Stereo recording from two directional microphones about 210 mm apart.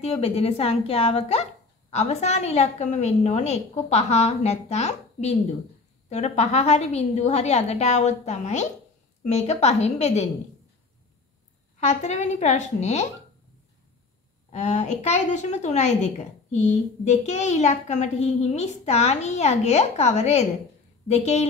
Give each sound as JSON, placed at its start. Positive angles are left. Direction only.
{"t": 0.0, "sound": "a woman's voice", "side_deg": 30}
{"t": 11.8, "sound": "a woman's voice", "side_deg": 35}
{"t": 14.5, "sound": "a woman's voice", "side_deg": 30}